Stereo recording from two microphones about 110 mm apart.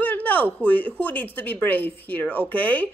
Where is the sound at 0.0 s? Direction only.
15° left (ahead or behind).